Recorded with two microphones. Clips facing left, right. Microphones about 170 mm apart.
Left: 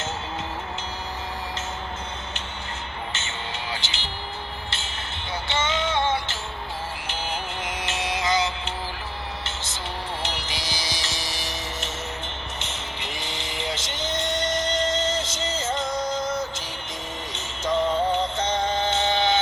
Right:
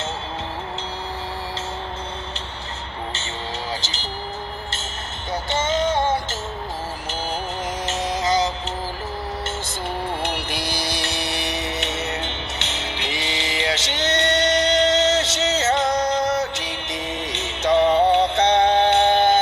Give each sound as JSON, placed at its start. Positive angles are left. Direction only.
{"t": 3.8, "sound": "vehicle", "side_deg": -40}
{"t": 5.3, "sound": "music", "side_deg": -45}
{"t": 7.9, "sound": "music", "side_deg": -40}
{"t": 10.2, "sound": "mantra", "side_deg": -55}